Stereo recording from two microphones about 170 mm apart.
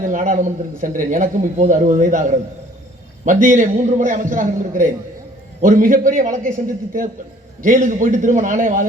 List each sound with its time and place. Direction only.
0.0 s a man's voice: 50° right (ahead or behind)
7.6 s a man's voice: 50° right (ahead or behind)